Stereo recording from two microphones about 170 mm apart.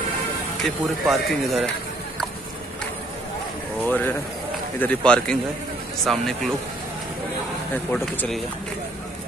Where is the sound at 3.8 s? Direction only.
10° left (ahead or behind).